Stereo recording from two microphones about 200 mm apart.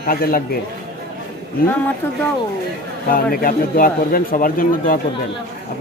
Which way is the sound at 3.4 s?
45° left (ahead or behind).